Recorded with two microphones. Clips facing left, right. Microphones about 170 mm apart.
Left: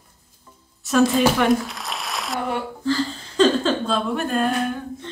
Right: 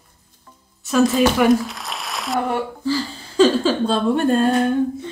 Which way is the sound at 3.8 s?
30° right (ahead or behind).